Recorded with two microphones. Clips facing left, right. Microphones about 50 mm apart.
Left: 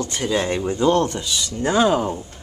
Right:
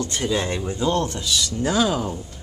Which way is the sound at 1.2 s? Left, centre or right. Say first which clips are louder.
Even; centre.